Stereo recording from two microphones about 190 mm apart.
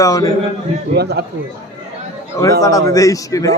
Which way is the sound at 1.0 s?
60° right (ahead or behind).